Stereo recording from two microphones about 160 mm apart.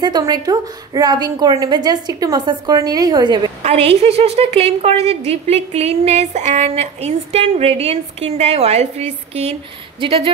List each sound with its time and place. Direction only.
0.0 s a woman's voice: 25° right (ahead or behind)
3.6 s a woman's voice: 40° right (ahead or behind)